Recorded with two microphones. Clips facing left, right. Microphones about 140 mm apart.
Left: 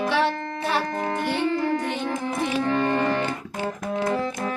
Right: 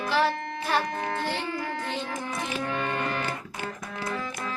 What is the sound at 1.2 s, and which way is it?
Music, 15° left (ahead or behind).